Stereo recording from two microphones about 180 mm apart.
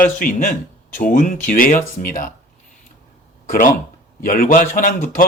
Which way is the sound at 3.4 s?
50° left (ahead or behind).